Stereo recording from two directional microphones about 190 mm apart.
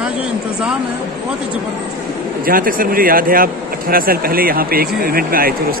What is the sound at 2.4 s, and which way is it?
Speech, 50° right (ahead or behind).